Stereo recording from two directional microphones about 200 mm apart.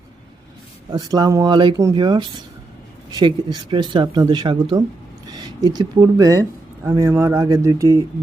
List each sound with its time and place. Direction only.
0.9 s speech: 20° right (ahead or behind)